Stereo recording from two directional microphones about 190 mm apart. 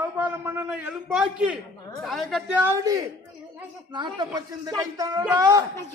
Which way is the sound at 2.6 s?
15° right (ahead or behind).